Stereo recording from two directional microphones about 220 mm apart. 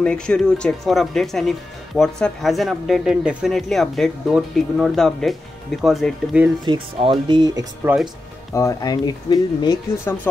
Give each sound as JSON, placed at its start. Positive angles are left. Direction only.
{"t": 0.0, "sound": "speech", "side_deg": 5}
{"t": 6.6, "sound": "speech", "side_deg": -20}
{"t": 8.5, "sound": "speech", "side_deg": 15}